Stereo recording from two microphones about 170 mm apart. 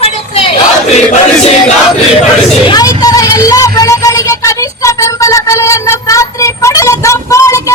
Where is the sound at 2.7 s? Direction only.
20° left (ahead or behind).